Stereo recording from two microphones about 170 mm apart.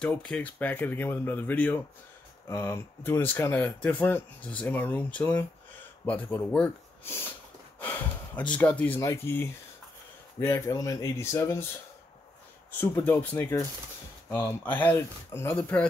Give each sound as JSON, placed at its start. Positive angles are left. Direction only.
{"t": 0.0, "sound": "speech", "side_deg": 5}
{"t": 12.7, "sound": "speech", "side_deg": 15}